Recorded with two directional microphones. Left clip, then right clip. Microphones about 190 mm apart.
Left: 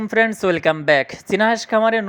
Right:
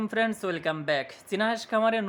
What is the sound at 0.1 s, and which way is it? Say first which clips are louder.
A woman's voice: left 12 dB; 25° left (ahead or behind).